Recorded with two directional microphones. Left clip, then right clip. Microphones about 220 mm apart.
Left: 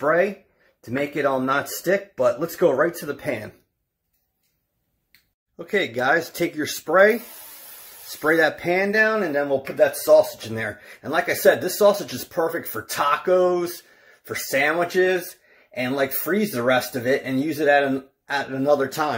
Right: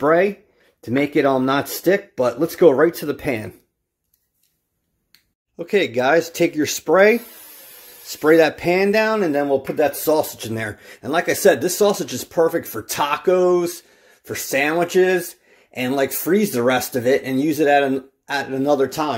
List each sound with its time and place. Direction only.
0.0 s speech: 45° right (ahead or behind)
5.7 s speech: 25° right (ahead or behind)
8.1 s speech: 25° right (ahead or behind)
8.8 s speech: 35° right (ahead or behind)